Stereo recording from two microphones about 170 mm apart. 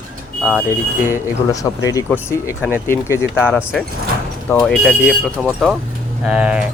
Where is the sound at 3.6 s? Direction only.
5° right (ahead or behind).